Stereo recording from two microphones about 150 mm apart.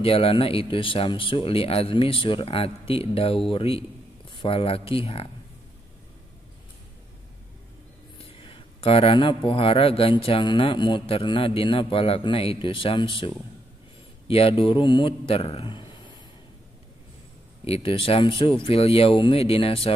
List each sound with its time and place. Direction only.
0.0 s speech: 40° left (ahead or behind)
8.2 s speech: 35° left (ahead or behind)
17.6 s speech: 40° left (ahead or behind)